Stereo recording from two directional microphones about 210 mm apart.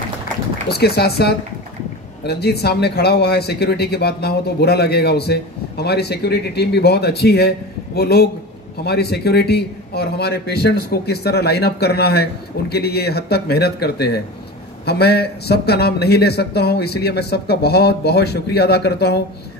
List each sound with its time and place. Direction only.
0.7 s speech: 50° left (ahead or behind)